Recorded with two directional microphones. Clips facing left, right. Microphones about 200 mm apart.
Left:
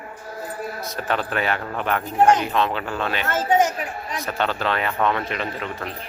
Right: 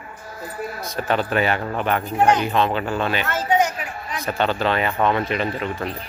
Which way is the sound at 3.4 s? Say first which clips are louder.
Left 1 dB; 45° left (ahead or behind).